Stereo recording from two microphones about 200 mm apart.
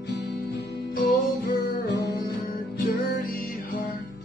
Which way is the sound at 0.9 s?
50° left (ahead or behind).